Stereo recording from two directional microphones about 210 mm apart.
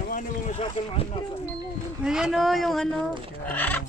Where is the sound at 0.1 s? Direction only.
30° left (ahead or behind).